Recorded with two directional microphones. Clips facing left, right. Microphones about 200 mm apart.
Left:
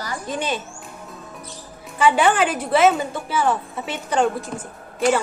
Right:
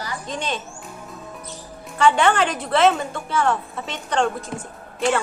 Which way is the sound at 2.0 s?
10° left (ahead or behind).